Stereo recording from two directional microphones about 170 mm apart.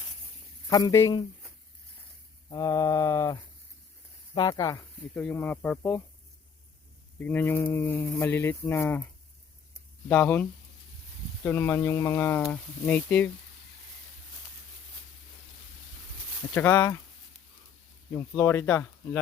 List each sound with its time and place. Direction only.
0.7 s mantra: 20° left (ahead or behind)
2.5 s mantra: 20° left (ahead or behind)
5.1 s speech: 10° left (ahead or behind)
7.2 s speech: 10° left (ahead or behind)
10.1 s speech: 10° left (ahead or behind)
11.4 s speech: 15° left (ahead or behind)
16.6 s speech: 15° left (ahead or behind)
18.1 s speech: 10° left (ahead or behind)